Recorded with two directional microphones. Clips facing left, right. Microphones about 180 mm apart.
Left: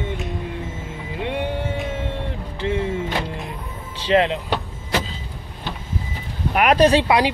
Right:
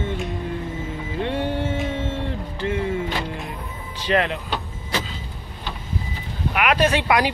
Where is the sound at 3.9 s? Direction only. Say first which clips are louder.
Left 4 dB; 25° left (ahead or behind).